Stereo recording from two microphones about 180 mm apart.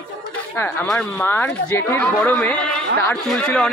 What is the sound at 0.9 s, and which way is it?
Speech, 10° left (ahead or behind).